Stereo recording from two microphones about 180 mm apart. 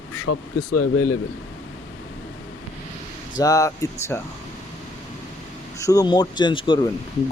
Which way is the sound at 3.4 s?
20° left (ahead or behind).